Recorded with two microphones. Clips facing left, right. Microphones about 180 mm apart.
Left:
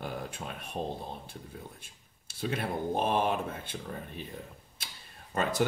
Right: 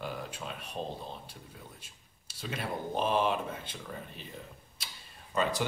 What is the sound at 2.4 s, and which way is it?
Speech, 55° left (ahead or behind).